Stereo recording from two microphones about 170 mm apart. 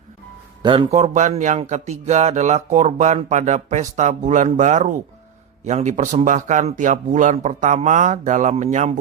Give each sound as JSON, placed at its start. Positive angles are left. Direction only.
{"t": 0.6, "sound": "speech", "side_deg": -30}